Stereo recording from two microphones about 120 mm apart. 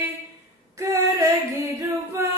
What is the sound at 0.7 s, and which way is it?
Female singing, 25° right (ahead or behind).